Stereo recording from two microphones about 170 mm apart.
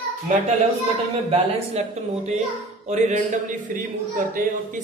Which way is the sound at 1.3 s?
40° right (ahead or behind).